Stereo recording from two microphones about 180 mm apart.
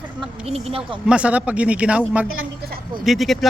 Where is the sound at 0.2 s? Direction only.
35° right (ahead or behind).